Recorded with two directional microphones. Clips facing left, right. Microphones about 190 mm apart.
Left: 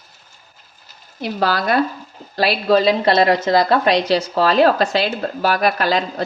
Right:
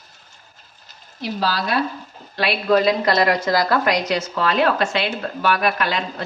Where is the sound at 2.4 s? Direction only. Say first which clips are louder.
Left 2 dB; 35° left (ahead or behind).